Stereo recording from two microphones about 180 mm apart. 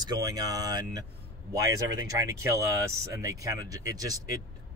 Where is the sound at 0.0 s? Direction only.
20° right (ahead or behind).